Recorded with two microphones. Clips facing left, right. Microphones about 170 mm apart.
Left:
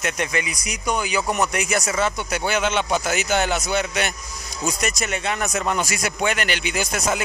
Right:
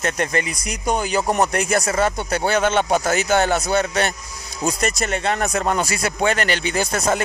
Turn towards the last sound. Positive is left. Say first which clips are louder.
# right 3 dB
turn(degrees=-55)  # may be behind; listen again after turning